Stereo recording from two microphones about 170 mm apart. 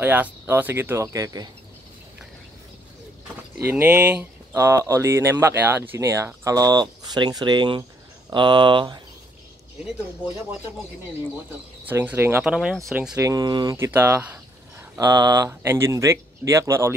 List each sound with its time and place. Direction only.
0.0 s speech: 10° right (ahead or behind)
3.6 s speech: 10° right (ahead or behind); by 9.0 s 25° right (ahead or behind)
11.8 s speech: 10° right (ahead or behind)
12.5 s speech: centre (ahead or behind)
13.3 s speech: 25° right (ahead or behind)